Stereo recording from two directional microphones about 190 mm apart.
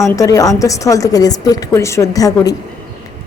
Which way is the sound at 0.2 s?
15° left (ahead or behind).